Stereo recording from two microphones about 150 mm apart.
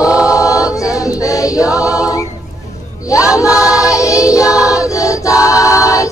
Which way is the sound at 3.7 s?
20° left (ahead or behind).